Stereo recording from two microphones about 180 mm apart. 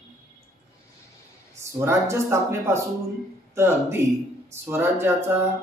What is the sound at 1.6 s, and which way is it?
Speech, 15° right (ahead or behind).